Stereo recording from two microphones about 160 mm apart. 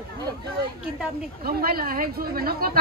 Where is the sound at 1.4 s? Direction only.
70° right (ahead or behind).